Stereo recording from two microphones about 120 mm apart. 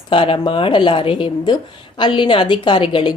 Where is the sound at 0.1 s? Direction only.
45° left (ahead or behind).